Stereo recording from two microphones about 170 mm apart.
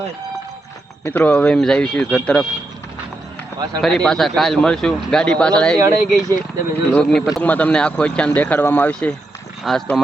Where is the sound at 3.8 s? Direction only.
5° left (ahead or behind).